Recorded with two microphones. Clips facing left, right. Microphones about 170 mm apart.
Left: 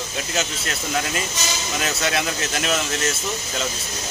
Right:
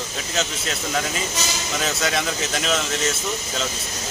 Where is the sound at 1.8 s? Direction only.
Centre (ahead or behind).